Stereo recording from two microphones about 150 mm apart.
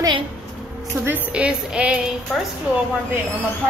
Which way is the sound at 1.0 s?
10° right (ahead or behind).